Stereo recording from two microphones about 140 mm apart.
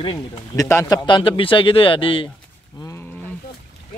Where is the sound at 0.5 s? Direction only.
20° left (ahead or behind); by 2.2 s 40° left (ahead or behind).